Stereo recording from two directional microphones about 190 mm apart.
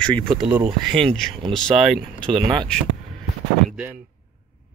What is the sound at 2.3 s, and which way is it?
Speech, 25° right (ahead or behind).